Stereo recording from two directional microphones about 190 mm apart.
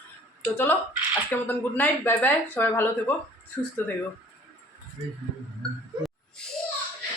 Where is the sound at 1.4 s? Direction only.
10° left (ahead or behind).